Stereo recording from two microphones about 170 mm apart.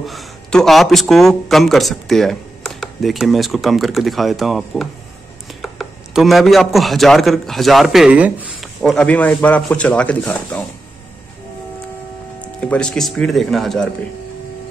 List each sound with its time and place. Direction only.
0.0 s a man's voice: centre (ahead or behind)
12.5 s a man's voice: 5° left (ahead or behind)